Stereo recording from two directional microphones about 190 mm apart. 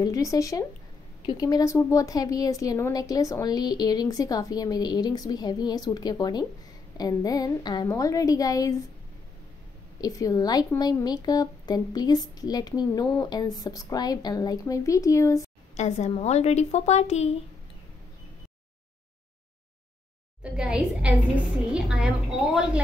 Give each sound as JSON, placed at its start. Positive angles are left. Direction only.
{"t": 0.0, "sound": "speech", "side_deg": 20}
{"t": 9.9, "sound": "speech", "side_deg": 20}
{"t": 15.7, "sound": "a woman's voice", "side_deg": 35}
{"t": 20.4, "sound": "a woman's voice", "side_deg": -5}